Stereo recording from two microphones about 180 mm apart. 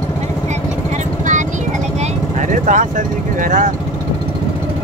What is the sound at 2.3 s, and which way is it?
Vehicle, 45° right (ahead or behind).